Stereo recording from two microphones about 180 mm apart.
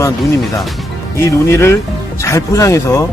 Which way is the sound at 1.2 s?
15° left (ahead or behind).